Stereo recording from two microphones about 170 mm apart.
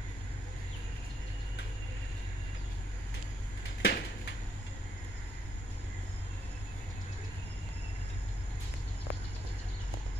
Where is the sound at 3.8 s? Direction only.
70° left (ahead or behind).